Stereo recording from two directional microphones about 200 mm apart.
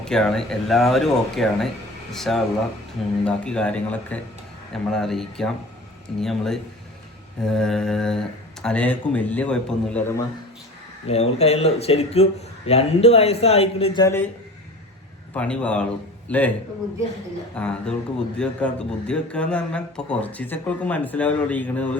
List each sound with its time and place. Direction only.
0.0 s speech: 5° left (ahead or behind)
11.1 s speech: 30° left (ahead or behind)
14.0 s speech: 10° left (ahead or behind)
15.3 s speech: 5° left (ahead or behind)